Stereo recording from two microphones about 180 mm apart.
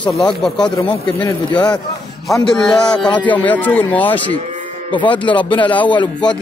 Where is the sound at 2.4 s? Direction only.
5° left (ahead or behind).